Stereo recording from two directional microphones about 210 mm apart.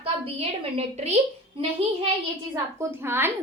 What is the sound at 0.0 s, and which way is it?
A woman's voice, 30° right (ahead or behind).